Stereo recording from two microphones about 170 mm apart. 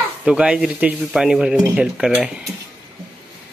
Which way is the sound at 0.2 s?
5° right (ahead or behind).